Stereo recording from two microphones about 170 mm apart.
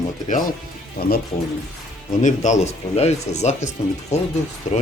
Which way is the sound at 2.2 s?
45° left (ahead or behind).